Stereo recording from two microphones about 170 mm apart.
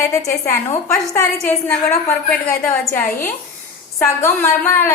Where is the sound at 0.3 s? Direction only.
15° left (ahead or behind).